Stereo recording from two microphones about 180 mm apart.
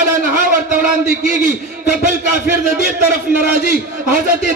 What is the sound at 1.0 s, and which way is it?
Speech, 50° right (ahead or behind).